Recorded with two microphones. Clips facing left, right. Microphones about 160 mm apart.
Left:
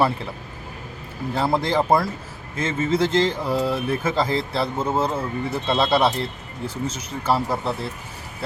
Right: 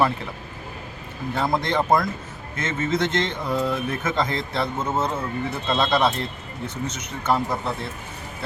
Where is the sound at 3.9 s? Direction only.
30° left (ahead or behind).